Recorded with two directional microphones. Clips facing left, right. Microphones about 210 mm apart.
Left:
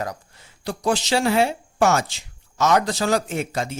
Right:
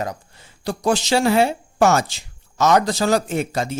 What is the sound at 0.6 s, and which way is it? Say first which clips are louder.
Speech: right 3 dB; 45° right (ahead or behind).